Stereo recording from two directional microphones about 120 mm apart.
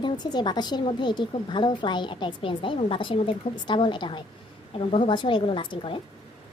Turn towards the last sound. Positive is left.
turn(degrees=45)  # may be behind; listen again after turning